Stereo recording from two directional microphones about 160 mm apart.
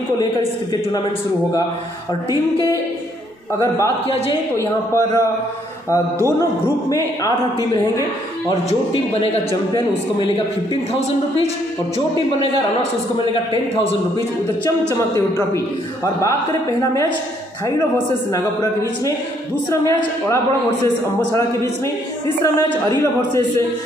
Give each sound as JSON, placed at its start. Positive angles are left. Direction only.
{"t": 3.5, "sound": "speech", "side_deg": 20}
{"t": 4.9, "sound": "speech", "side_deg": 20}
{"t": 6.6, "sound": "speech", "side_deg": 20}
{"t": 9.8, "sound": "a man's voice", "side_deg": 35}
{"t": 15.1, "sound": "a man's voice", "side_deg": 20}
{"t": 18.3, "sound": "speech", "side_deg": 20}
{"t": 20.8, "sound": "speech", "side_deg": 20}